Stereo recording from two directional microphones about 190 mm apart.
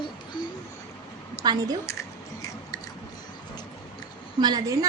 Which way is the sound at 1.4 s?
20° right (ahead or behind).